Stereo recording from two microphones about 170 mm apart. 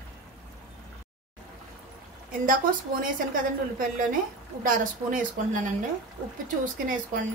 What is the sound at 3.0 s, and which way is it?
A woman's voice, 55° right (ahead or behind).